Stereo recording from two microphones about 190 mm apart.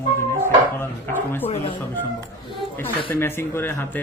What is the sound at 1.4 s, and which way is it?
Speech, 30° left (ahead or behind).